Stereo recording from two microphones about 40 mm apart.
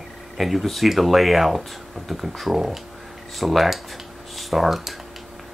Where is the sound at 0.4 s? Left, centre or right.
Centre.